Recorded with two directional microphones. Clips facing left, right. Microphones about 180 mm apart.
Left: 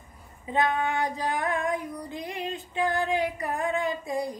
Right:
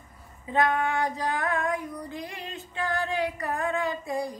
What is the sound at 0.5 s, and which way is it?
Female singing, 20° left (ahead or behind).